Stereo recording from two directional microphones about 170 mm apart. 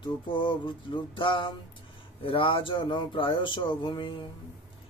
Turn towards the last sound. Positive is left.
turn(degrees=25)  # may be behind; listen again after turning